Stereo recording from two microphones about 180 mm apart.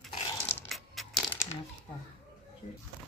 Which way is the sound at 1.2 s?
15° left (ahead or behind).